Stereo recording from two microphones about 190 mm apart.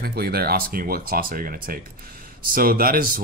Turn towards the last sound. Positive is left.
turn(degrees=-50)  # may be behind; listen again after turning